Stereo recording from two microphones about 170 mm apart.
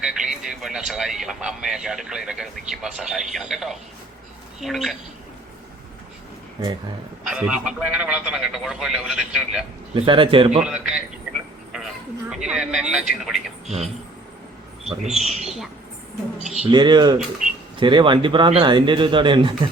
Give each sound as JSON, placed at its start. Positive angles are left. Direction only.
{"t": 0.0, "sound": "a man's voice", "side_deg": -5}
{"t": 7.3, "sound": "a man's voice", "side_deg": -5}
{"t": 9.9, "sound": "a man's voice", "side_deg": -30}
{"t": 10.6, "sound": "a man's voice", "side_deg": -5}
{"t": 12.3, "sound": "a man's voice", "side_deg": -5}
{"t": 15.0, "sound": "a man's voice", "side_deg": 0}
{"t": 16.7, "sound": "speech", "side_deg": -25}